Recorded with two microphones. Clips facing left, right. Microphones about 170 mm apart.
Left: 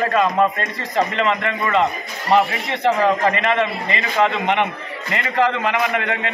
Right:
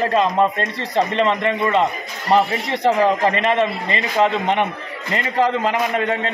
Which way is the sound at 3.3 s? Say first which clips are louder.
Right 1 dB; 30° right (ahead or behind).